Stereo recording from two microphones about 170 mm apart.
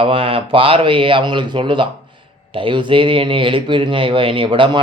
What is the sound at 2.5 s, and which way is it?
Speech, 30° right (ahead or behind).